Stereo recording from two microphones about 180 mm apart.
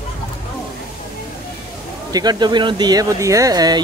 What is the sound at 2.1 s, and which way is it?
Speech, 20° right (ahead or behind).